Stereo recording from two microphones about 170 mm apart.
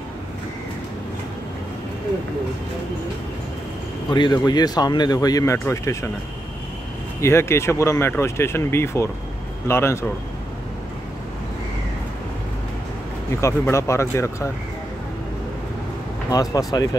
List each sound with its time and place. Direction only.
4.1 s speech: 25° left (ahead or behind)
7.2 s speech: 15° left (ahead or behind)
13.4 s speech: 15° left (ahead or behind)
16.3 s speech: 20° left (ahead or behind)